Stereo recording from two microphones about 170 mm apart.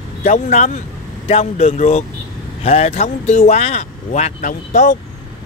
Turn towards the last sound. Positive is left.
turn(degrees=50)  # may be behind; listen again after turning